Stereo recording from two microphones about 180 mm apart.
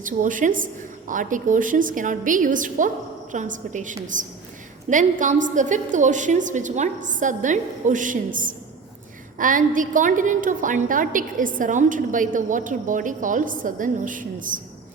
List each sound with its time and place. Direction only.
0.0 s a woman's voice: 45° right (ahead or behind)